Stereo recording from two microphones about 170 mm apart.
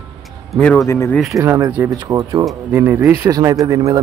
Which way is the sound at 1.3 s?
20° right (ahead or behind).